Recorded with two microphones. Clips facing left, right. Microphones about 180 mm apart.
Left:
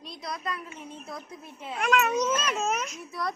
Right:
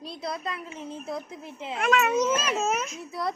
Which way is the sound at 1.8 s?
Centre (ahead or behind).